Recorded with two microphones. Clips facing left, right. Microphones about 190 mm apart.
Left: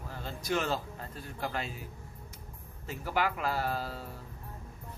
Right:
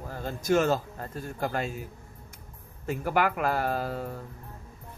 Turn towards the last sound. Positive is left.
turn(degrees=-50)  # may be behind; listen again after turning